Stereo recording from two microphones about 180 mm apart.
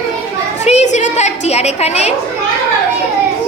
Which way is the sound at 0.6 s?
40° left (ahead or behind).